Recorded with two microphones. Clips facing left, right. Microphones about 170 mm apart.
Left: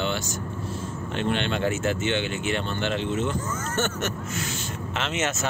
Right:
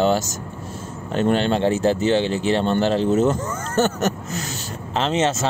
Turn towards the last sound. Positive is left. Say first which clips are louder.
# right 7 dB
turn(degrees=-30)  # may be behind; listen again after turning